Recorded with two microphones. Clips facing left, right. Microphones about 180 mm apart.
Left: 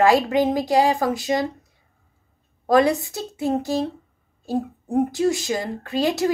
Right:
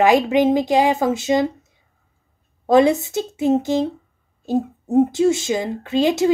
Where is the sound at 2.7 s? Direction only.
25° right (ahead or behind).